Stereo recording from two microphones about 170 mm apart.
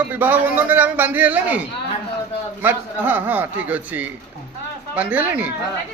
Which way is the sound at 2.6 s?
10° right (ahead or behind).